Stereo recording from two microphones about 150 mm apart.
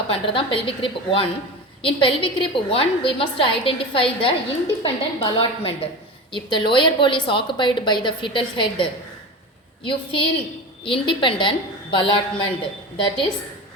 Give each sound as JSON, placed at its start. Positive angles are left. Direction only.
{"t": 0.1, "sound": "a woman's voice", "side_deg": 35}